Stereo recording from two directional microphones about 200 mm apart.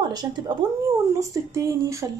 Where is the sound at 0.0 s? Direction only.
20° right (ahead or behind).